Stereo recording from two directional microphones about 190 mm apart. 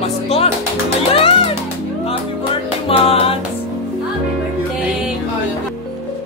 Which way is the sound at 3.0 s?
30° left (ahead or behind).